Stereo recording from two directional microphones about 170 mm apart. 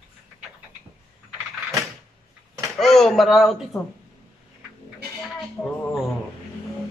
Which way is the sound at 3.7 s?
20° left (ahead or behind).